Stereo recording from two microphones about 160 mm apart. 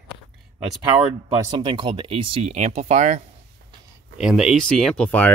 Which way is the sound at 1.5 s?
30° right (ahead or behind).